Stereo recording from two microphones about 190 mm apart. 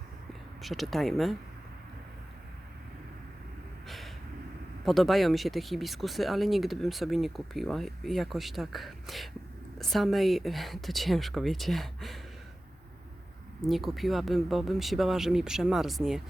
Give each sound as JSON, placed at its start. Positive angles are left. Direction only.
{"t": 0.6, "sound": "speech", "side_deg": 0}
{"t": 3.8, "sound": "a sound", "side_deg": 0}
{"t": 4.9, "sound": "speech", "side_deg": 0}
{"t": 13.7, "sound": "speech", "side_deg": 0}